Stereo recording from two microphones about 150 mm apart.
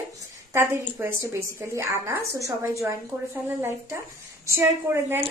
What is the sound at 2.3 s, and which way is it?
A woman's voice, 20° right (ahead or behind).